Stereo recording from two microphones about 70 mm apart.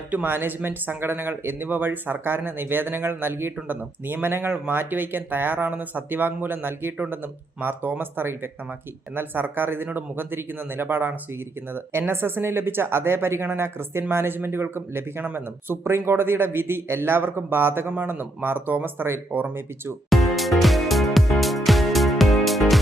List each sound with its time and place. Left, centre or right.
0.1 s speech: right
20.1 s music: centre